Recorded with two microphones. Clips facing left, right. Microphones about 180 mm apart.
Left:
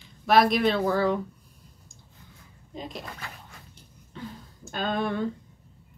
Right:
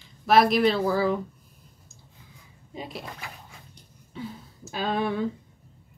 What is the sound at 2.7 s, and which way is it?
Dog, 5° right (ahead or behind).